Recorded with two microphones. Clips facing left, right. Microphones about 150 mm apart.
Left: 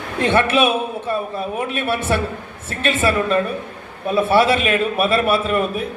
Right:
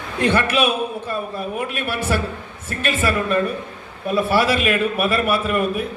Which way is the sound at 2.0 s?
25° left (ahead or behind).